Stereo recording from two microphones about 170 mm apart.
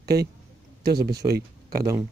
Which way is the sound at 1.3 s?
60° right (ahead or behind).